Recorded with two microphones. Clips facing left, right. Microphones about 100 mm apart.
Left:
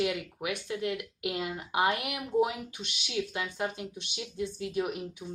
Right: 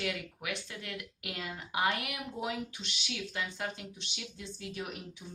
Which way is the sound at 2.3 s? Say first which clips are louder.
Left 13 dB; 60° left (ahead or behind).